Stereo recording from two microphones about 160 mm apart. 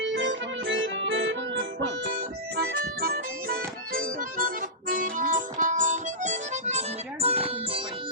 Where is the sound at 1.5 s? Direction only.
90° right.